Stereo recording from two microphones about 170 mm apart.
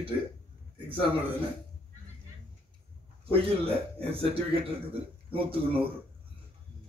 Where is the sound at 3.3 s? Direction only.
35° right (ahead or behind).